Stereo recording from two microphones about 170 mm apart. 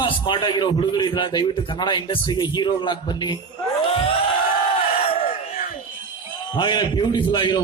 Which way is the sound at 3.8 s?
35° left (ahead or behind).